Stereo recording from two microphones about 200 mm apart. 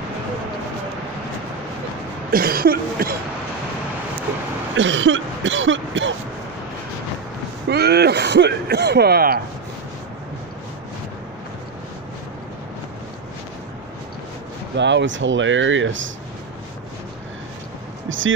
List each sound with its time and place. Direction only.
2.3 s speech: 45° right (ahead or behind)
4.7 s speech: 65° right (ahead or behind)
7.7 s speech: 55° right (ahead or behind)
14.8 s speech: 65° right (ahead or behind)
18.0 s a sound: 75° right (ahead or behind)